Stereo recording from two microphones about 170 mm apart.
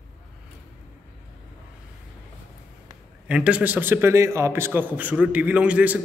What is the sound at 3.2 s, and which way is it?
A man's voice, 5° right (ahead or behind).